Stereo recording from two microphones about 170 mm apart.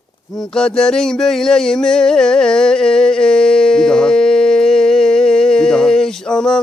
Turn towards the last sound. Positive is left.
turn(degrees=5)  # may be behind; listen again after turning